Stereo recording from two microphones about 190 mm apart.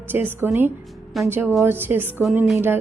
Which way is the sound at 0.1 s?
10° right (ahead or behind).